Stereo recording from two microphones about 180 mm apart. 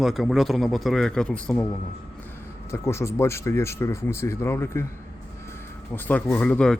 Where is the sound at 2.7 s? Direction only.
15° left (ahead or behind).